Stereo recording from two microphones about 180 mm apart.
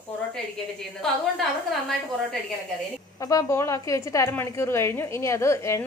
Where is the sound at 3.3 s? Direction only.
15° left (ahead or behind).